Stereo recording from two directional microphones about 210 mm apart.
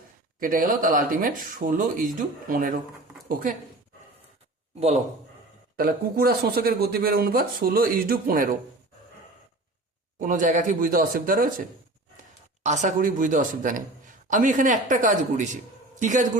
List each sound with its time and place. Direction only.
0.3 s speech: 40° right (ahead or behind)
5.7 s speech: 45° right (ahead or behind)
10.2 s speech: 40° right (ahead or behind)
12.6 s speech: 35° right (ahead or behind)